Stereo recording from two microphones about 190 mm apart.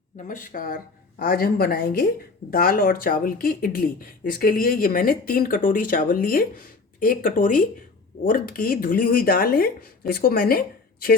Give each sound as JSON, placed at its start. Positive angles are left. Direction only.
{"t": 0.3, "sound": "speech", "side_deg": 45}